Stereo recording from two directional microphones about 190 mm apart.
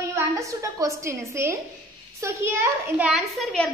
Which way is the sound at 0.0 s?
15° right (ahead or behind).